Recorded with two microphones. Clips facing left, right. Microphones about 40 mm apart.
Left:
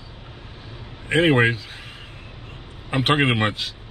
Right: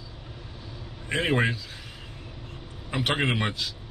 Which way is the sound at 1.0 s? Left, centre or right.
Left.